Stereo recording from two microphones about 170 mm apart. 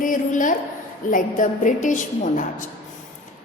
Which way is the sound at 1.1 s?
50° left (ahead or behind).